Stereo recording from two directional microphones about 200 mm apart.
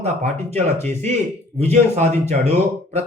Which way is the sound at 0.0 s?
35° right (ahead or behind).